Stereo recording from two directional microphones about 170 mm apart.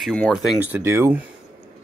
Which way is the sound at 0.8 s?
15° right (ahead or behind).